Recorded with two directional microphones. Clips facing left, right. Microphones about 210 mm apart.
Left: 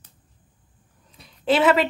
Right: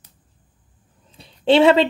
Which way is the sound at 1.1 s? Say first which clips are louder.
Right 6 dB; 30° right (ahead or behind).